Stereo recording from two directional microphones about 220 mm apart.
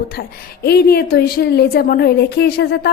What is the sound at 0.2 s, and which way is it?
A woman's voice, 45° left (ahead or behind).